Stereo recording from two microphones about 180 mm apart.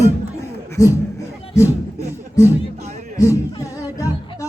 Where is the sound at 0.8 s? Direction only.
15° left (ahead or behind).